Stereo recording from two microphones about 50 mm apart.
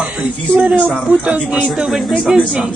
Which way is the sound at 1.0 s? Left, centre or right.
Right.